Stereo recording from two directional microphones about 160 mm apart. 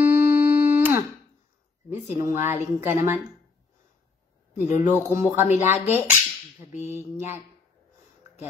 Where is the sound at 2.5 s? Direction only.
15° right (ahead or behind).